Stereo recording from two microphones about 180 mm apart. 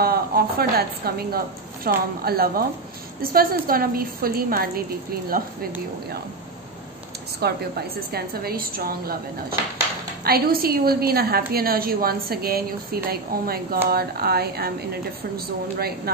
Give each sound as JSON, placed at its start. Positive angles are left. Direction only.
{"t": 0.0, "sound": "a woman's voice", "side_deg": -55}
{"t": 7.3, "sound": "a woman's voice", "side_deg": -60}